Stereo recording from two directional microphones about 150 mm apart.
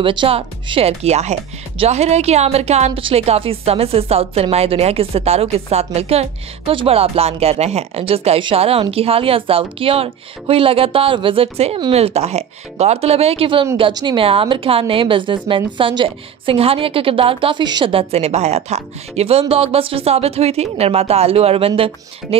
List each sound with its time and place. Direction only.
0.0 s a woman's voice: 35° right (ahead or behind)